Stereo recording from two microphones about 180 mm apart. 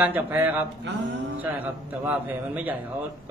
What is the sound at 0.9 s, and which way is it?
Speech, 75° right (ahead or behind).